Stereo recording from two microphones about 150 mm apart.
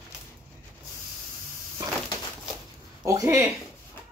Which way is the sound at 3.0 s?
20° right (ahead or behind).